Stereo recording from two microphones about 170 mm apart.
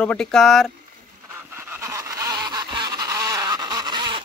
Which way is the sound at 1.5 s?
15° right (ahead or behind).